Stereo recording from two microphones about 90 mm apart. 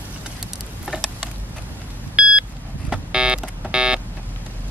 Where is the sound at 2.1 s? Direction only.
10° right (ahead or behind).